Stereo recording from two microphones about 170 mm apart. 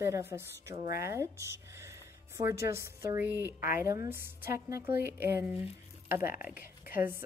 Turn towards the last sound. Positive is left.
turn(degrees=-10)  # may be behind; listen again after turning